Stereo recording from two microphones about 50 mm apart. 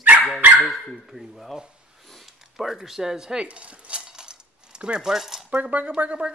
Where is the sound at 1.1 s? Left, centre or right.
Centre.